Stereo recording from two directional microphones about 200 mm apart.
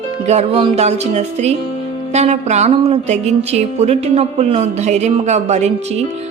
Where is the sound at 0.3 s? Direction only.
30° right (ahead or behind).